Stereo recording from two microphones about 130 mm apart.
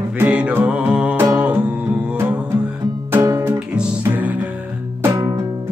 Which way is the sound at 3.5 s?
5° right (ahead or behind).